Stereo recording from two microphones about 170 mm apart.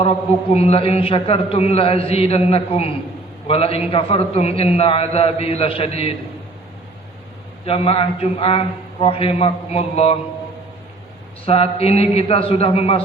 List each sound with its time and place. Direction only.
0.5 s a man's voice: 35° left (ahead or behind)
7.6 s a man's voice: 35° left (ahead or behind)
11.4 s a man's voice: 35° left (ahead or behind)